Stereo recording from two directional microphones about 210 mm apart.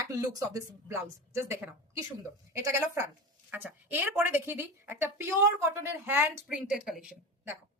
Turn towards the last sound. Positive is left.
turn(degrees=-5)  # may be behind; listen again after turning